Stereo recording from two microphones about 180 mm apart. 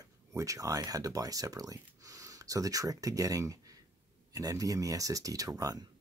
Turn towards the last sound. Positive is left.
turn(degrees=-20)  # may be behind; listen again after turning